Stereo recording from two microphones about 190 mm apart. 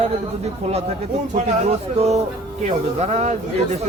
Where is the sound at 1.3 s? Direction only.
35° right (ahead or behind).